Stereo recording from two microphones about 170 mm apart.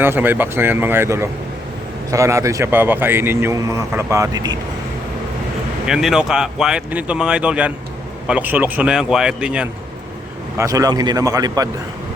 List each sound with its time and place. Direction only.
0.0 s a man's voice: 10° right (ahead or behind)
5.8 s a man's voice: 5° right (ahead or behind)
10.6 s a man's voice: 20° right (ahead or behind)